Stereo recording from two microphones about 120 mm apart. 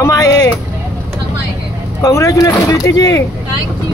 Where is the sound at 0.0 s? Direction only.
30° left (ahead or behind).